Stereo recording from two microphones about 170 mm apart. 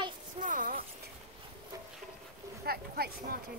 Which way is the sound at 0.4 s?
50° right (ahead or behind).